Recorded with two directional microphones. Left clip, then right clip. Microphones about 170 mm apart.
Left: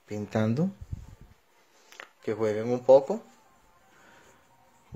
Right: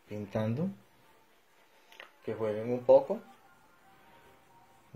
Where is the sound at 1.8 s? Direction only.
50° left (ahead or behind).